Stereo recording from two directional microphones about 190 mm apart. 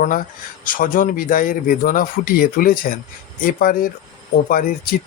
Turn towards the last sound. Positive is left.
turn(degrees=50)  # may be behind; listen again after turning